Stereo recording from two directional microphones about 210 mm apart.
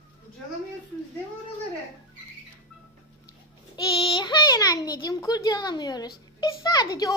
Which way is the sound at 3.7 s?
20° left (ahead or behind).